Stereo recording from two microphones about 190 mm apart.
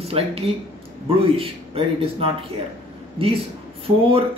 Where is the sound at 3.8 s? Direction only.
30° right (ahead or behind).